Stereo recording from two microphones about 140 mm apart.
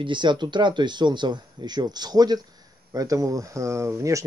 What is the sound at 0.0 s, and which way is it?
Speech, 35° right (ahead or behind).